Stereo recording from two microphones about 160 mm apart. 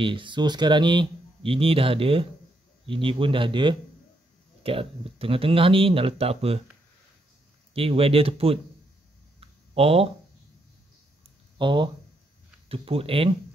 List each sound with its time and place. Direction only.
0.0 s speech: 30° right (ahead or behind)
7.7 s speech: 35° right (ahead or behind)
9.4 s a sound: 40° right (ahead or behind)
11.5 s speech: 30° right (ahead or behind)